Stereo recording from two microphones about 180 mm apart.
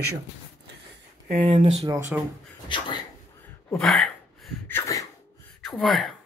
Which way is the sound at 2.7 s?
25° left (ahead or behind).